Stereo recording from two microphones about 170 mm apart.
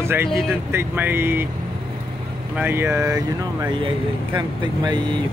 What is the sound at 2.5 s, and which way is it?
Speech, 10° right (ahead or behind).